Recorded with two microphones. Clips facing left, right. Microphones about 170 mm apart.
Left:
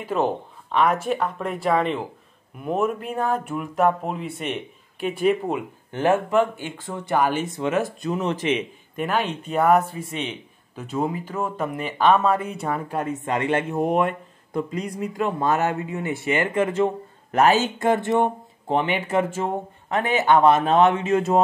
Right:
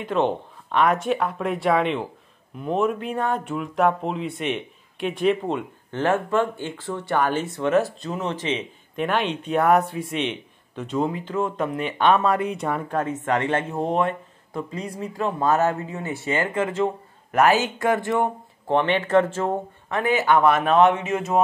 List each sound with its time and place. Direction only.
0.0 s speech: 5° left (ahead or behind)
8.2 s speech: 20° right (ahead or behind)
8.9 s speech: 5° left (ahead or behind)
14.7 s speech: 25° right (ahead or behind)
16.2 s speech: 15° left (ahead or behind)
19.9 s speech: 25° left (ahead or behind)